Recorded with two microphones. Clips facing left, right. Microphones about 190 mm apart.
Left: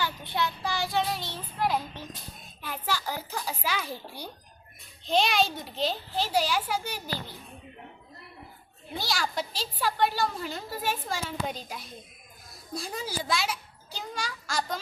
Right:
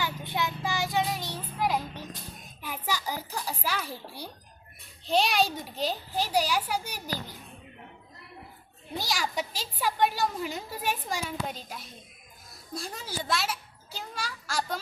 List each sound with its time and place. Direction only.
0.0 s child singing: 15° right (ahead or behind)
2.6 s music: 10° right (ahead or behind)
3.3 s a sound: 5° right (ahead or behind)
3.8 s a child's voice: 30° right (ahead or behind)
5.0 s a woman's voice: 10° right (ahead or behind)
9.0 s a woman's voice: 15° right (ahead or behind)
11.4 s a child's voice: centre (ahead or behind)